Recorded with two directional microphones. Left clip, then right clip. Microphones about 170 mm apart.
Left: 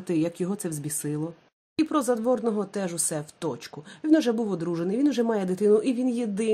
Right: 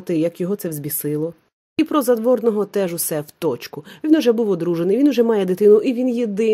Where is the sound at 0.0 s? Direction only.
35° right (ahead or behind).